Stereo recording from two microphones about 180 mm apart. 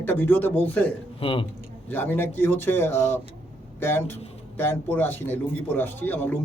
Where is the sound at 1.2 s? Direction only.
30° left (ahead or behind).